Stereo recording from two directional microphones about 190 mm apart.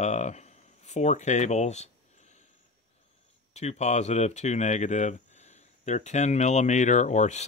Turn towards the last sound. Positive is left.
turn(degrees=40)  # may be behind; listen again after turning